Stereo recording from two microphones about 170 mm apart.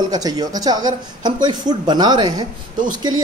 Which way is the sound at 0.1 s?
20° right (ahead or behind).